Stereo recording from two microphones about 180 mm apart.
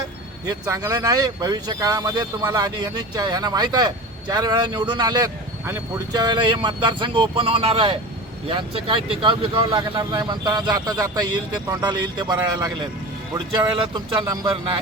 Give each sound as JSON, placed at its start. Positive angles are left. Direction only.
{"t": 0.4, "sound": "speech", "side_deg": -20}